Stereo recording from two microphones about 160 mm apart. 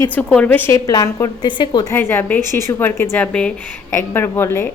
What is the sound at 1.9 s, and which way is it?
A woman's voice, 15° left (ahead or behind).